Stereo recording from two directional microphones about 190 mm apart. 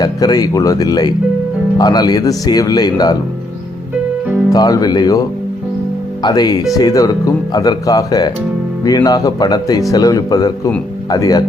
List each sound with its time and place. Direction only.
0.0 s speech: 20° left (ahead or behind)
4.5 s speech: 20° left (ahead or behind)